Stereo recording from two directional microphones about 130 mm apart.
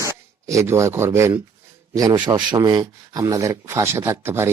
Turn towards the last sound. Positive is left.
turn(degrees=-20)  # may be behind; listen again after turning